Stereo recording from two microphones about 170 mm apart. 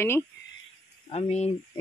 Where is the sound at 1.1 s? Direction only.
40° left (ahead or behind).